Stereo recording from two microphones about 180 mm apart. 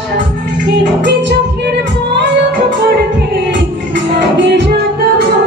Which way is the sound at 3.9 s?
80° right.